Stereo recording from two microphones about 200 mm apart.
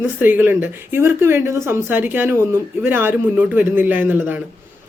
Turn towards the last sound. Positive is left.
turn(degrees=-10)  # may be behind; listen again after turning